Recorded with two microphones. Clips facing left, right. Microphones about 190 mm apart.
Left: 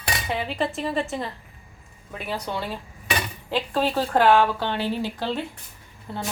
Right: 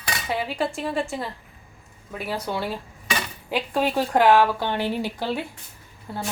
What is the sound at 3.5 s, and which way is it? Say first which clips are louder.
A woman's voice: even; 10° right (ahead or behind).